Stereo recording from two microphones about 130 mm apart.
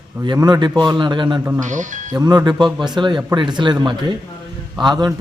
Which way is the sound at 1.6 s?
75° right (ahead or behind).